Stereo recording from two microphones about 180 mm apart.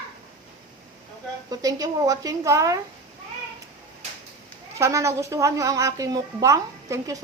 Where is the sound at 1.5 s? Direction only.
20° right (ahead or behind).